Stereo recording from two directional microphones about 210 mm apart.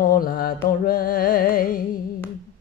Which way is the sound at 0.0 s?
45° left (ahead or behind).